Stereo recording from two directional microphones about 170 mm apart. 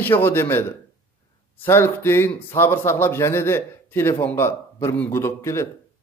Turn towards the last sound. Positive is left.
turn(degrees=15)  # may be behind; listen again after turning